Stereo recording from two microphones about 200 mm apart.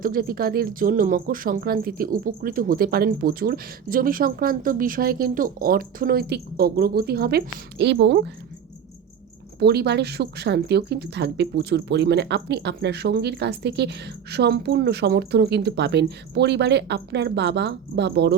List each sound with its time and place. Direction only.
0.0 s speech: 45° right (ahead or behind)
9.6 s a woman's voice: 55° right (ahead or behind)